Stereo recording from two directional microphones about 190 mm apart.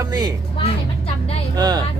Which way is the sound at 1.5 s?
20° right (ahead or behind).